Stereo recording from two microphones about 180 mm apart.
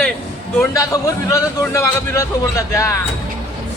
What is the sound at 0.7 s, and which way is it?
Speech, 20° left (ahead or behind).